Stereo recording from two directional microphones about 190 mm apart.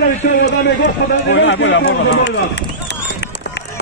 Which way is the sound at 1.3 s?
70° left (ahead or behind).